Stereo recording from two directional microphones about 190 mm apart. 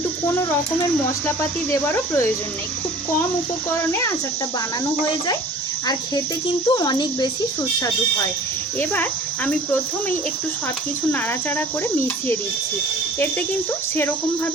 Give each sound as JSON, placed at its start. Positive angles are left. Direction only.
{"t": 1.4, "sound": "speech", "side_deg": 10}
{"t": 6.7, "sound": "speech", "side_deg": 25}